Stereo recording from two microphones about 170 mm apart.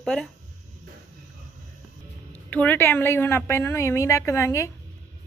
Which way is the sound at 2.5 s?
10° left (ahead or behind).